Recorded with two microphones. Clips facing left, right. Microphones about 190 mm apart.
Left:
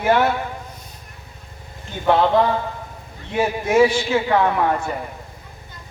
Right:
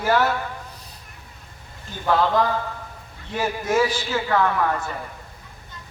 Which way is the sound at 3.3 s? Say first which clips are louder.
Left 5 dB; 25° left (ahead or behind).